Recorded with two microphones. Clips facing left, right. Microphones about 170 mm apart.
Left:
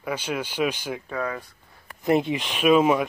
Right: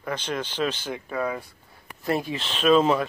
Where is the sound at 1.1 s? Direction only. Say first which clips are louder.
Right 2 dB; 5° right (ahead or behind).